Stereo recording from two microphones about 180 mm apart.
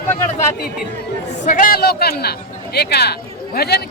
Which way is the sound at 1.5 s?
50° left (ahead or behind).